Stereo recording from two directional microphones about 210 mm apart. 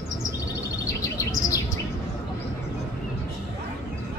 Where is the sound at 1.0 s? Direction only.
15° left (ahead or behind).